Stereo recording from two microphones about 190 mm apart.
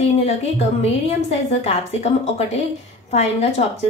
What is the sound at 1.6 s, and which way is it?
A woman's voice, 35° left (ahead or behind).